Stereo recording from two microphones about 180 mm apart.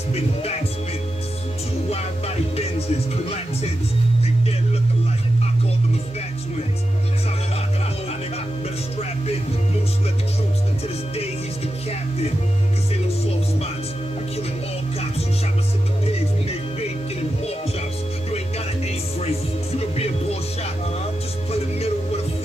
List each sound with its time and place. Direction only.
0.1 s speech: 35° left (ahead or behind)
1.9 s speech: 35° left (ahead or behind)
16.1 s music: 35° left (ahead or behind)
19.8 s music: 35° left (ahead or behind)
21.5 s music: 35° left (ahead or behind)